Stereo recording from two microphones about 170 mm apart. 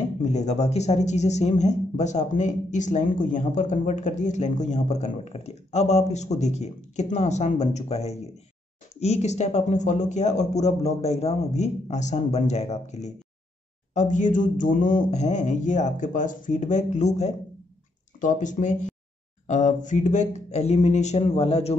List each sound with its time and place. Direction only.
0.2 s speech: 45° left (ahead or behind)